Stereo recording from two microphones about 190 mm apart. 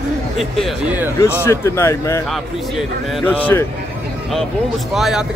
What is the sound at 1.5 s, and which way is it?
Speech, 15° left (ahead or behind).